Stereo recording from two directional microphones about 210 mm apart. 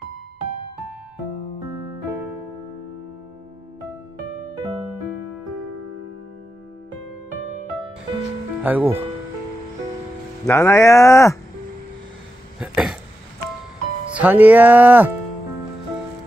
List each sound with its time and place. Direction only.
8.6 s speech: 10° right (ahead or behind)
10.4 s speech: 15° left (ahead or behind)
12.5 s a sound: 5° right (ahead or behind)
14.1 s speech: 10° right (ahead or behind)